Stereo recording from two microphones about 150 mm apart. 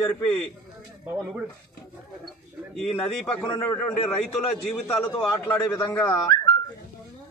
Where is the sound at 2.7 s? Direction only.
5° left (ahead or behind).